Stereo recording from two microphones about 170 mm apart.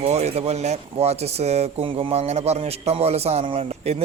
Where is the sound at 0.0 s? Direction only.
40° right (ahead or behind).